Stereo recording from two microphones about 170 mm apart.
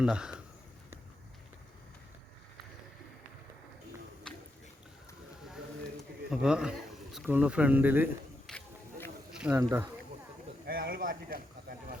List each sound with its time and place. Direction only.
0.0 s speech: 5° right (ahead or behind)
6.3 s speech: 5° right (ahead or behind)
8.4 s a sound: 5° left (ahead or behind)
9.4 s speech: 10° right (ahead or behind)
10.7 s a man's voice: 60° right (ahead or behind)